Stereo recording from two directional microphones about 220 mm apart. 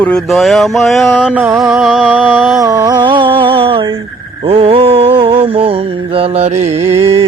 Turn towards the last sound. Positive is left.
turn(degrees=-15)  # may be behind; listen again after turning